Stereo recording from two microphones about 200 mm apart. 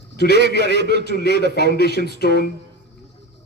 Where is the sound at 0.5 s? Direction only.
55° left (ahead or behind).